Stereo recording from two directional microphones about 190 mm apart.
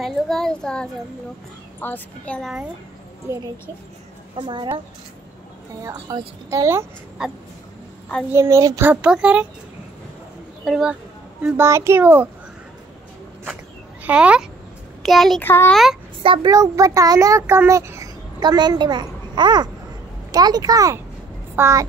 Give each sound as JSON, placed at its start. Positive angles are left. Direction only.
{"t": 0.0, "sound": "a child's voice", "side_deg": 0}
{"t": 3.3, "sound": "a child's voice", "side_deg": -15}
{"t": 4.4, "sound": "a child's voice", "side_deg": -25}
{"t": 5.8, "sound": "a child's voice", "side_deg": -20}
{"t": 7.2, "sound": "a child's voice", "side_deg": -5}
{"t": 8.3, "sound": "a child's voice", "side_deg": -15}
{"t": 10.6, "sound": "a child's voice", "side_deg": -5}
{"t": 14.0, "sound": "a child's voice", "side_deg": -5}
{"t": 15.4, "sound": "a woman's voice", "side_deg": 10}
{"t": 15.7, "sound": "a child's voice", "side_deg": 0}
{"t": 16.2, "sound": "a child's voice", "side_deg": -25}